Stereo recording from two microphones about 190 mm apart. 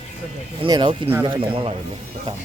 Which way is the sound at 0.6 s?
20° right (ahead or behind).